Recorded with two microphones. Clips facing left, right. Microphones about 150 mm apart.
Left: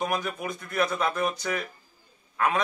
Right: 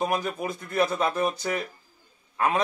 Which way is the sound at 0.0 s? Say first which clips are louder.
Right 2 dB; 30° right (ahead or behind).